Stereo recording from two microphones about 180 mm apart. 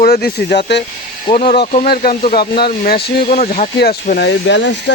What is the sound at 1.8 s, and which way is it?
Speech, 55° left (ahead or behind).